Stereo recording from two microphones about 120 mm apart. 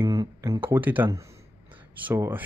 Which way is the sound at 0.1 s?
30° right (ahead or behind).